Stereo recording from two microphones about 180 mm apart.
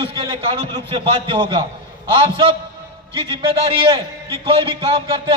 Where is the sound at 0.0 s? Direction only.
30° right (ahead or behind).